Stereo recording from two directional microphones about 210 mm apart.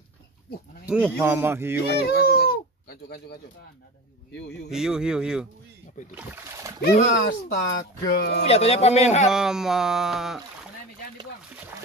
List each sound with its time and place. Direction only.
0.8 s speech: 5° right (ahead or behind)
1.9 s a sound: 50° left (ahead or behind)
4.3 s speech: 55° left (ahead or behind)
4.6 s speech: 5° right (ahead or behind)
6.8 s speech: 40° left (ahead or behind)
8.5 s speech: 30° left (ahead or behind)
9.3 s speech: 5° right (ahead or behind)